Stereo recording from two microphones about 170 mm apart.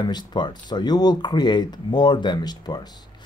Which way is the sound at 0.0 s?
25° left (ahead or behind).